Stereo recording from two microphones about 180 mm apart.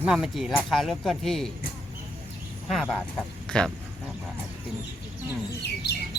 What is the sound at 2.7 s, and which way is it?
Speech, centre (ahead or behind).